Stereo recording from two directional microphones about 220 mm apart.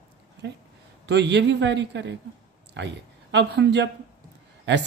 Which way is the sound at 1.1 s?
50° right (ahead or behind).